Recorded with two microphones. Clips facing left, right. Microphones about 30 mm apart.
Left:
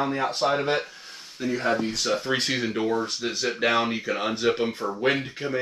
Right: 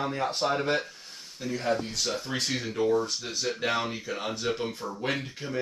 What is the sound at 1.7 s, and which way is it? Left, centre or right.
Speech, left.